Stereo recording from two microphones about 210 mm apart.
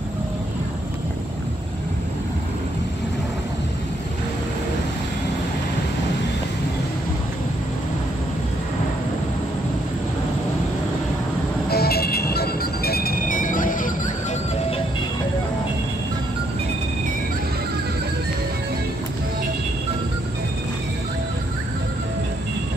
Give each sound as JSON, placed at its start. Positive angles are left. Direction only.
{"t": 11.7, "sound": "music", "side_deg": 50}